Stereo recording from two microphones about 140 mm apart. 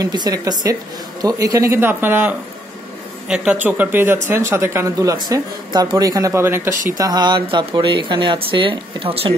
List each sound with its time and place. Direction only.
0.0 s speech: 30° right (ahead or behind)
7.0 s speech: 30° right (ahead or behind)